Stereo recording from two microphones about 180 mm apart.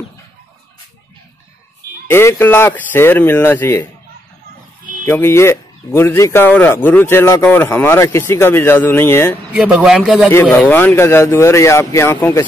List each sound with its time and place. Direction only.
2.0 s speech: 15° left (ahead or behind)
5.0 s speech: 15° left (ahead or behind)
9.5 s a man's voice: 5° right (ahead or behind)
10.3 s speech: 15° left (ahead or behind)